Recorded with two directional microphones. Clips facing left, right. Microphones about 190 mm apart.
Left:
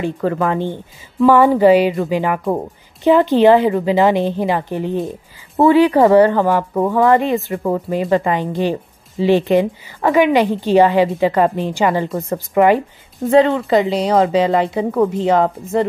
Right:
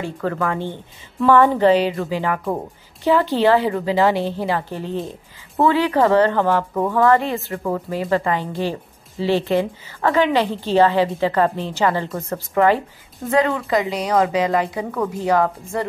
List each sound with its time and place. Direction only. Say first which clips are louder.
0.0 s speech: left 5 dB; 20° left (ahead or behind)
1.2 s a woman's voice: left 4 dB; 10° left (ahead or behind)
13.3 s speech: left 6 dB; 30° left (ahead or behind)